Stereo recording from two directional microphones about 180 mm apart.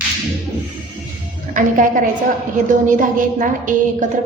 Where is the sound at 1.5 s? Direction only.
45° right (ahead or behind).